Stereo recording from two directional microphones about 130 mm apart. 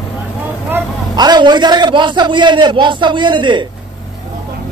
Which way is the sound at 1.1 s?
35° right (ahead or behind).